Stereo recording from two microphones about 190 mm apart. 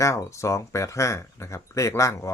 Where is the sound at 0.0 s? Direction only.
15° left (ahead or behind).